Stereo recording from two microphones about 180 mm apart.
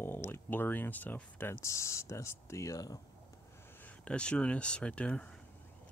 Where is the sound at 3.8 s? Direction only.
5° left (ahead or behind).